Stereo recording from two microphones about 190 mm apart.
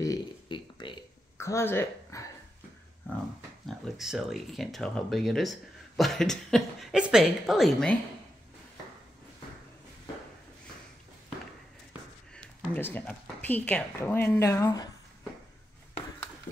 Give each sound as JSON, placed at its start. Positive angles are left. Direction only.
{"t": 0.0, "sound": "a sound", "side_deg": 20}
{"t": 3.6, "sound": "speech", "side_deg": 0}
{"t": 12.4, "sound": "a woman's voice", "side_deg": 10}